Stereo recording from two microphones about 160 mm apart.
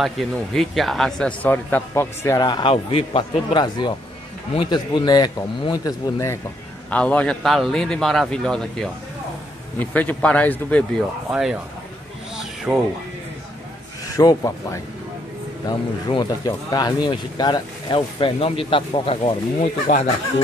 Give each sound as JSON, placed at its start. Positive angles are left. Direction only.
{"t": 0.0, "sound": "speech", "side_deg": 0}
{"t": 2.7, "sound": "speech", "side_deg": 40}
{"t": 12.7, "sound": "speech", "side_deg": 0}
{"t": 14.0, "sound": "speech", "side_deg": 20}
{"t": 19.9, "sound": "speech", "side_deg": 45}